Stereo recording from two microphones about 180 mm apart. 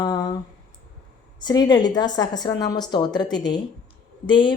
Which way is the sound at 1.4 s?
25° left (ahead or behind).